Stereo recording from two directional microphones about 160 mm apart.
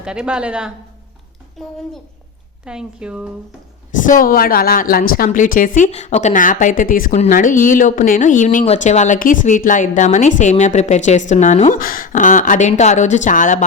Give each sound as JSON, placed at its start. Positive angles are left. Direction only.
{"t": 0.0, "sound": "speech", "side_deg": -5}
{"t": 3.9, "sound": "a woman's voice", "side_deg": 55}